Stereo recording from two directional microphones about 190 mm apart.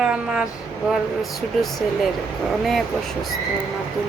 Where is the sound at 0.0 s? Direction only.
5° right (ahead or behind).